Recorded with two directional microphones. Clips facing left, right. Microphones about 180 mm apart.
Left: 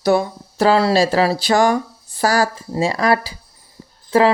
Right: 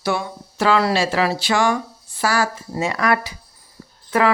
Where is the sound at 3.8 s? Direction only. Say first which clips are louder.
Left 1 dB; 25° left (ahead or behind).